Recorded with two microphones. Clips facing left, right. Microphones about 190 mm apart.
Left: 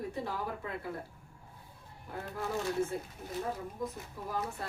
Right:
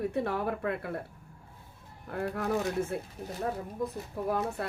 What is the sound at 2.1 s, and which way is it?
Speech, 60° right (ahead or behind).